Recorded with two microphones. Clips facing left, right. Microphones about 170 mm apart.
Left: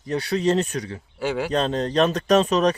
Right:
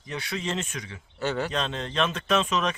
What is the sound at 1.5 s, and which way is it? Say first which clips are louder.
Speech: left 8 dB; 40° left (ahead or behind).